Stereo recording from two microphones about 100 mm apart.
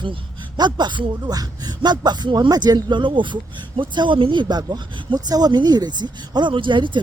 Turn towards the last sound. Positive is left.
turn(degrees=-55)  # may be behind; listen again after turning